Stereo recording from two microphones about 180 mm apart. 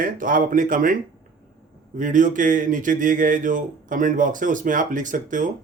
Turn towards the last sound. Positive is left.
turn(degrees=-45)  # may be behind; listen again after turning